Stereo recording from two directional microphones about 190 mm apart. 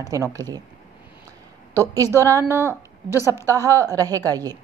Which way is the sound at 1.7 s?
15° right (ahead or behind).